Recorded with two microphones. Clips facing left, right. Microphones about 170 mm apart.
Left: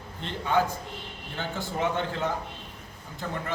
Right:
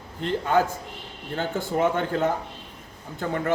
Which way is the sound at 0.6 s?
45° right (ahead or behind).